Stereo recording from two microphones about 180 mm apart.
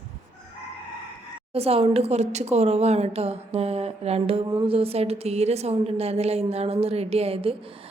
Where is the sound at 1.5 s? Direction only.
35° right (ahead or behind).